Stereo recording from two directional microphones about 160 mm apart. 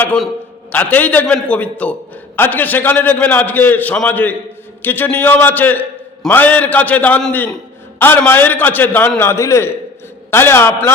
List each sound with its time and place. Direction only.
0.7 s a man's voice: 10° left (ahead or behind)